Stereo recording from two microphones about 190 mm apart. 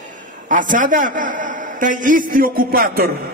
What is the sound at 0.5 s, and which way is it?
A man's voice, 45° right (ahead or behind).